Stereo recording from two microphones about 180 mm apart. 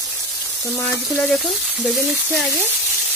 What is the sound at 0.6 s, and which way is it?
Speech, 15° left (ahead or behind).